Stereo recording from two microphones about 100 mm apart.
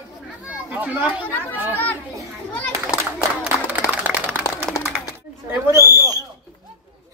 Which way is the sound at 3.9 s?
15° right (ahead or behind).